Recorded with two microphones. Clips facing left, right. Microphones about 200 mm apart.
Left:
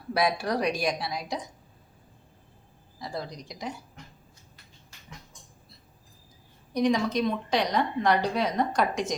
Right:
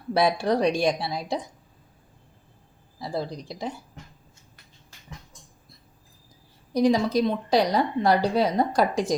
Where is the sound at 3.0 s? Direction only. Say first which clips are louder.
Right 5 dB; 30° right (ahead or behind).